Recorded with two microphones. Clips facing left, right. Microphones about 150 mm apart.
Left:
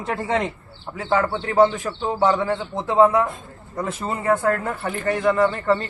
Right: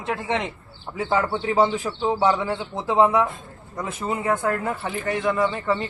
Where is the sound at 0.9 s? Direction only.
15° right (ahead or behind).